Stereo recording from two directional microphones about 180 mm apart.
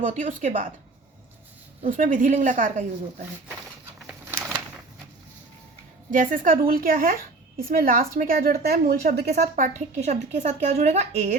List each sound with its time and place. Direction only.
0.0 s a woman's voice: 45° right (ahead or behind)
1.9 s a woman's voice: 50° right (ahead or behind)
4.3 s a sound: 10° right (ahead or behind)
6.1 s a woman's voice: 50° right (ahead or behind)
9.6 s a woman's voice: 40° right (ahead or behind)